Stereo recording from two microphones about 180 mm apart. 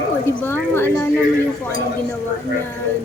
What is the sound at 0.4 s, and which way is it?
Speech, 10° left (ahead or behind).